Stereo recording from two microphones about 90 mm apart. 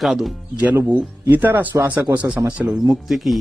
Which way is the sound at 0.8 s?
20° right (ahead or behind).